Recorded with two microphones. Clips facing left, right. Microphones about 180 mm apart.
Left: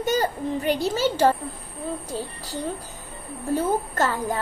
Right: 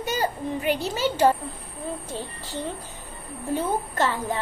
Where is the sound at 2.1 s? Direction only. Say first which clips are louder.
Left 2 dB; 40° left (ahead or behind).